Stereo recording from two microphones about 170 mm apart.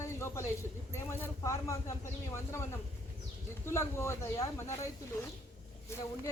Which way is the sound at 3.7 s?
15° left (ahead or behind).